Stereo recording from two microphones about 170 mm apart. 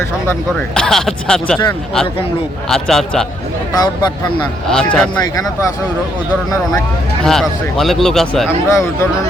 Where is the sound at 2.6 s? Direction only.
Centre (ahead or behind).